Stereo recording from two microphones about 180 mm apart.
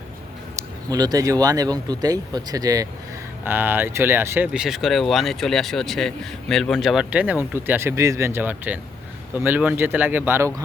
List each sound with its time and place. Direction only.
0.5 s speech: 20° right (ahead or behind)